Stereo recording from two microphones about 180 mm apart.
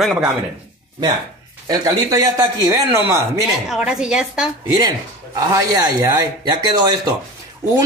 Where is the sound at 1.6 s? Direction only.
20° right (ahead or behind).